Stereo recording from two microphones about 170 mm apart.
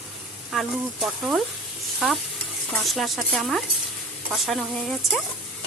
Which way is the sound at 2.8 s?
Centre (ahead or behind).